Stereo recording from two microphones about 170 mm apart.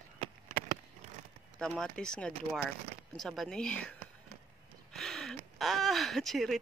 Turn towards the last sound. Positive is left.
turn(degrees=0)  # may be behind; listen again after turning